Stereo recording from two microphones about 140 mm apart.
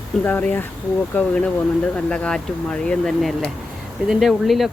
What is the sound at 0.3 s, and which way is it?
Speech, 10° left (ahead or behind).